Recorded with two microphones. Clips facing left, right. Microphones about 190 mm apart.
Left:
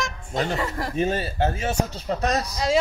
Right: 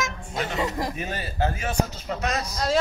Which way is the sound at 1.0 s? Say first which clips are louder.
Left 5 dB; 25° left (ahead or behind).